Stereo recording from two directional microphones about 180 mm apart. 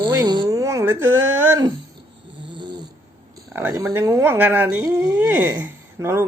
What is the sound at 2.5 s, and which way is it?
Cat, 25° right (ahead or behind).